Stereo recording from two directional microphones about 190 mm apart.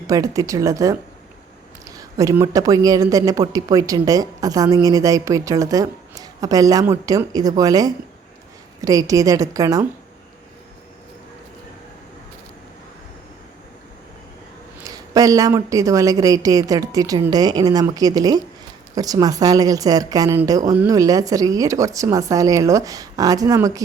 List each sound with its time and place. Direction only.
0.1 s speech: 20° right (ahead or behind)
14.8 s speech: 20° right (ahead or behind)